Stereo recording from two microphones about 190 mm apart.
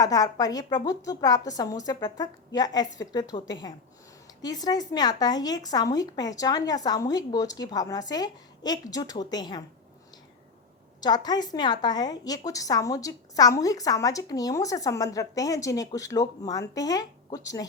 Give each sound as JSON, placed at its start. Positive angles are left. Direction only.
{"t": 0.0, "sound": "a woman's voice", "side_deg": 20}
{"t": 11.0, "sound": "a woman's voice", "side_deg": 20}